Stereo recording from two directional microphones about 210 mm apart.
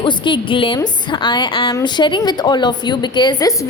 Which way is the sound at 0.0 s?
20° left (ahead or behind).